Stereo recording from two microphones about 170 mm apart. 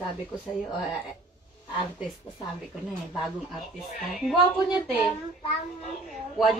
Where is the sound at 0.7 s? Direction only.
Centre (ahead or behind).